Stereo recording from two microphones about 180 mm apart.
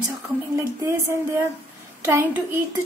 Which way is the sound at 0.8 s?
15° right (ahead or behind).